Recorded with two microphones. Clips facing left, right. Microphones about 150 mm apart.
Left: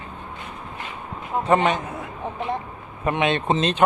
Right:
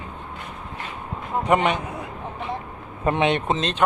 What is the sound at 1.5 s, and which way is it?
Speech, 30° left (ahead or behind).